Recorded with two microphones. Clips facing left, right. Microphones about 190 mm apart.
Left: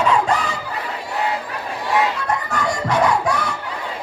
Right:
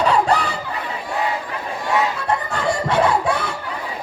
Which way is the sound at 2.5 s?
30° right (ahead or behind).